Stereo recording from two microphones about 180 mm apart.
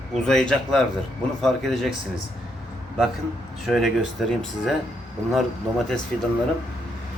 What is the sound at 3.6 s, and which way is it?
A man's voice, centre (ahead or behind).